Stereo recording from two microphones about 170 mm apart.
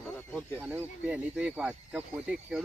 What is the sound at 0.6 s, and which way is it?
Speech, 10° right (ahead or behind).